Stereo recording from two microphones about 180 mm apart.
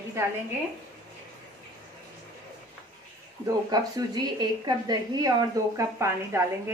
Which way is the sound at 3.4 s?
20° right (ahead or behind).